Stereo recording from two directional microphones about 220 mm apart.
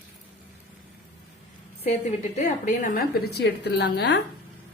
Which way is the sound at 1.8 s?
30° left (ahead or behind).